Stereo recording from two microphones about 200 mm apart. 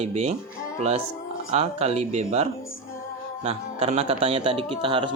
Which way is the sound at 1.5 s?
30° right (ahead or behind).